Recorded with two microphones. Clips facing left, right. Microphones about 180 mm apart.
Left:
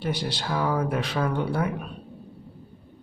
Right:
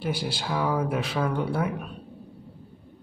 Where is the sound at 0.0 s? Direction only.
5° right (ahead or behind).